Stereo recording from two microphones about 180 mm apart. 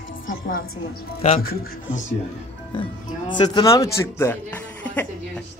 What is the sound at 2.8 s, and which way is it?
Speech, 25° left (ahead or behind).